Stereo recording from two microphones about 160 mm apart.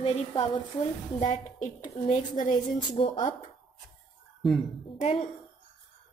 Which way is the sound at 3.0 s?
30° left (ahead or behind).